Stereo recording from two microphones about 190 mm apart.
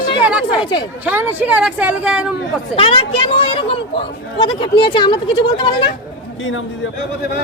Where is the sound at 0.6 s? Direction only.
25° left (ahead or behind).